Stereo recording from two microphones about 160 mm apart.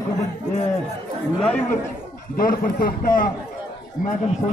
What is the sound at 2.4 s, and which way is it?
Speech, 60° left (ahead or behind).